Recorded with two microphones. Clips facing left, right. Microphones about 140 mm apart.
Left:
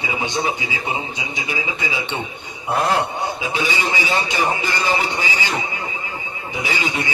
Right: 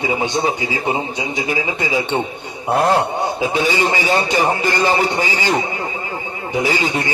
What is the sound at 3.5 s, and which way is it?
A man's voice, 40° right (ahead or behind).